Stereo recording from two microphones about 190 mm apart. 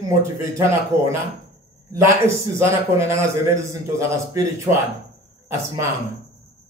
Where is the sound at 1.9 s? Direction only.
15° right (ahead or behind).